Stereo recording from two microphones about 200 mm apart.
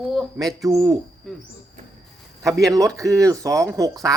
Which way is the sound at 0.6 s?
20° right (ahead or behind).